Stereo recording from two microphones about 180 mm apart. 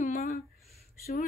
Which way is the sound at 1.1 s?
45° left (ahead or behind).